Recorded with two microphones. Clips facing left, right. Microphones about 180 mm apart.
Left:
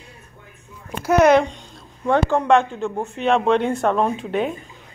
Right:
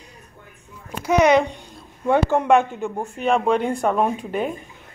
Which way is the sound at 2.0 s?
15° right (ahead or behind).